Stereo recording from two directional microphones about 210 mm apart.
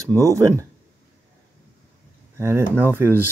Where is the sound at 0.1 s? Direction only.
15° right (ahead or behind).